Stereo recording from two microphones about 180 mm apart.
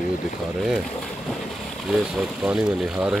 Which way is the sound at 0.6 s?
Centre (ahead or behind).